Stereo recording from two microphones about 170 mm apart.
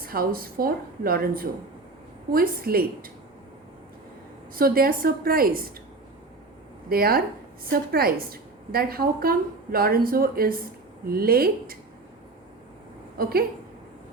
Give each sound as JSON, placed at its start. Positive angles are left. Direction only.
{"t": 0.0, "sound": "a woman's voice", "side_deg": -60}
{"t": 4.5, "sound": "a woman's voice", "side_deg": -60}
{"t": 6.9, "sound": "a woman's voice", "side_deg": -65}
{"t": 13.2, "sound": "a woman's voice", "side_deg": -60}